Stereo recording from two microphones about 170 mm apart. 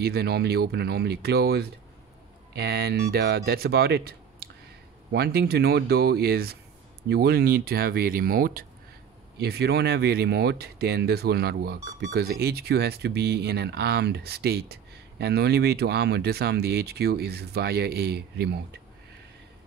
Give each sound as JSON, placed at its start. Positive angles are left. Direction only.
{"t": 0.0, "sound": "speech", "side_deg": -70}
{"t": 9.4, "sound": "speech", "side_deg": -70}